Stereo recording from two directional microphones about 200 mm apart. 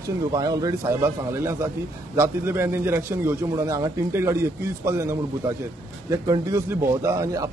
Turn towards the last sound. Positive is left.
turn(degrees=-15)  # may be behind; listen again after turning